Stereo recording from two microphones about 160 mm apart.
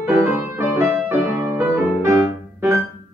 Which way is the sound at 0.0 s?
15° right (ahead or behind).